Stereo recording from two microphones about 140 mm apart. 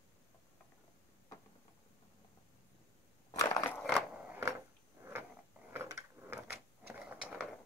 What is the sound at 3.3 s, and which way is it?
Crushing, 25° left (ahead or behind).